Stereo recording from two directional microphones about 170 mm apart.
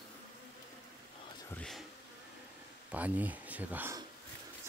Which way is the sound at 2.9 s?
10° right (ahead or behind).